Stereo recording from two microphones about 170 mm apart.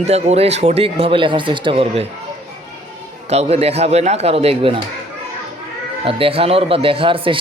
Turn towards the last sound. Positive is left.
turn(degrees=-30)  # may be behind; listen again after turning